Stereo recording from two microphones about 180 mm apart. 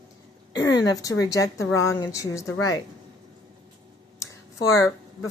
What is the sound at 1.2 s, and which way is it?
Speech, 20° left (ahead or behind).